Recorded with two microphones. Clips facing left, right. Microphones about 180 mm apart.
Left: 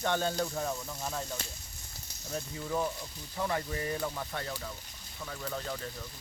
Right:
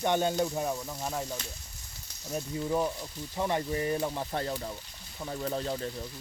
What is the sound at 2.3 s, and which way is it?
Speech, 20° right (ahead or behind).